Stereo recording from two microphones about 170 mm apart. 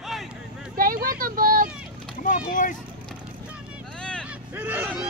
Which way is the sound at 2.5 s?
50° left (ahead or behind).